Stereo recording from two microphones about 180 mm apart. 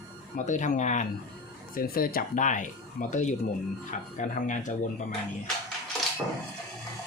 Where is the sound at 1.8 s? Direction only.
55° left (ahead or behind).